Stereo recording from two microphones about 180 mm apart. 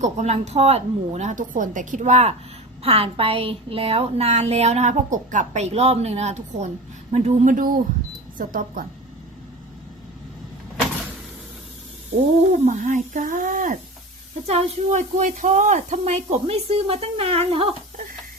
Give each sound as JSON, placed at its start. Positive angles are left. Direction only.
{"t": 0.0, "sound": "a woman's voice", "side_deg": -40}
{"t": 12.5, "sound": "a woman's voice", "side_deg": -40}